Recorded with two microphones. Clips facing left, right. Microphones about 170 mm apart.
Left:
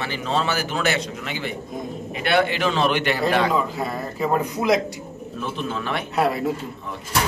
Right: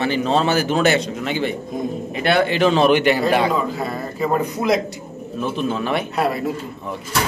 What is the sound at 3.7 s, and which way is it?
Speech, 10° left (ahead or behind).